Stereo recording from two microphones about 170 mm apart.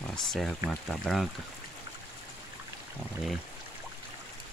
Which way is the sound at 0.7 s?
Centre (ahead or behind).